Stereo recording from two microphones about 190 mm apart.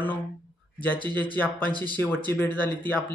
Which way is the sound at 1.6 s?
25° right (ahead or behind).